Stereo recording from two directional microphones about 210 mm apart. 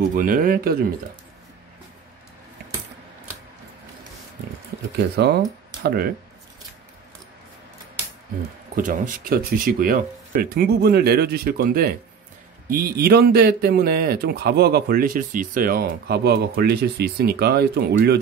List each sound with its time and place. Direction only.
0.1 s speech: 40° right (ahead or behind)
5.1 s speech: 50° right (ahead or behind)
8.7 s speech: 40° right (ahead or behind)